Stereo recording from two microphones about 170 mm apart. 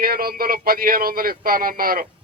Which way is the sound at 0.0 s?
60° right (ahead or behind).